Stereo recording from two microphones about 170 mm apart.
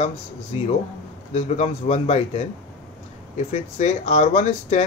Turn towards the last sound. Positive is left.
turn(degrees=45)  # may be behind; listen again after turning